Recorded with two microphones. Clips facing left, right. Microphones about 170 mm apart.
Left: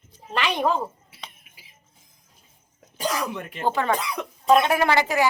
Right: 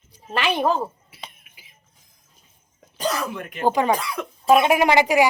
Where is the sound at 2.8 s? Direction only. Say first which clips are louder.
Right 2 dB; 10° left (ahead or behind).